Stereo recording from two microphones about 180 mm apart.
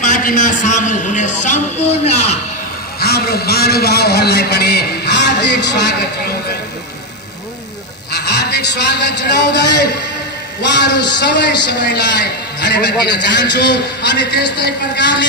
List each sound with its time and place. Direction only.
0.0 s a man's voice: 45° left (ahead or behind)
3.0 s a man's voice: 60° left (ahead or behind)
8.1 s a man's voice: 70° left (ahead or behind)